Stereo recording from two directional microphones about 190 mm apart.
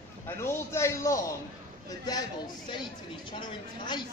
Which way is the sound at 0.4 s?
15° left (ahead or behind).